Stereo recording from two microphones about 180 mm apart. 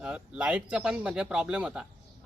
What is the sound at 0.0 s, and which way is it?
Speech, 5° right (ahead or behind).